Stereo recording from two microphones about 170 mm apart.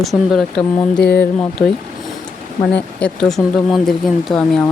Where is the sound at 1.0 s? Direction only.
65° left (ahead or behind).